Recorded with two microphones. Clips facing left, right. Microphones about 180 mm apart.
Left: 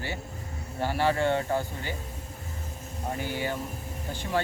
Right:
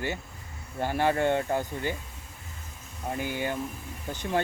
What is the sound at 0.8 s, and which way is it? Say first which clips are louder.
Speech: even; 15° right (ahead or behind).